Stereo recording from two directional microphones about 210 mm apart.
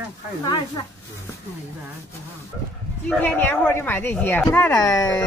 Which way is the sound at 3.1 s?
10° left (ahead or behind).